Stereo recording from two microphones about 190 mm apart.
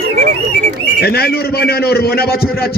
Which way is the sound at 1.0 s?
55° left (ahead or behind).